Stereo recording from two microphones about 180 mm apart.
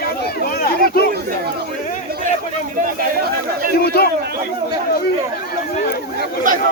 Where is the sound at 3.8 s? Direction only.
60° left (ahead or behind).